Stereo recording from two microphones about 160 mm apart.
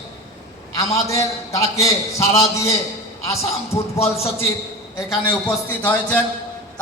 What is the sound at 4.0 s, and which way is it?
Speech, 40° left (ahead or behind).